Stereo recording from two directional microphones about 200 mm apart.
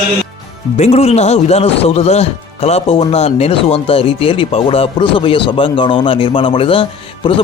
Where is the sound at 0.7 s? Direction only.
30° left (ahead or behind).